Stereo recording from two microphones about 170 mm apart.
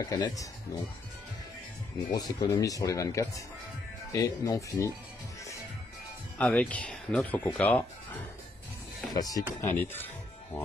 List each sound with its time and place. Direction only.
0.0 s speech: 25° left (ahead or behind)
2.0 s speech: 25° left (ahead or behind)
6.3 s speech: 5° left (ahead or behind)
9.1 s speech: 20° left (ahead or behind)
9.8 s music: 10° left (ahead or behind)